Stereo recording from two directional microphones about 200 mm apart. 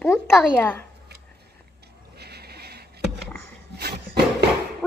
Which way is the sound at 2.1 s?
55° right (ahead or behind).